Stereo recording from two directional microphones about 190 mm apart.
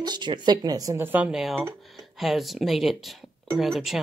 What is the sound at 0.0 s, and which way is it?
Speech, 25° right (ahead or behind).